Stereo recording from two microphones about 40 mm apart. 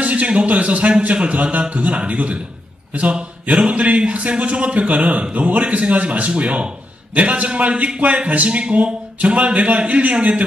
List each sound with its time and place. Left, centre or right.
0.0 s a man's voice: right